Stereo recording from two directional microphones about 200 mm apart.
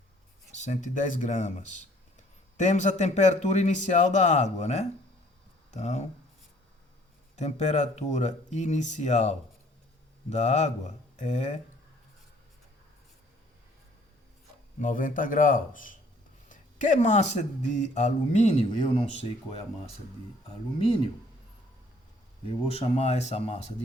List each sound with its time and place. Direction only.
0.5 s speech: 35° left (ahead or behind)
7.3 s speech: 35° left (ahead or behind)
14.8 s speech: 40° left (ahead or behind)
22.4 s speech: 30° left (ahead or behind)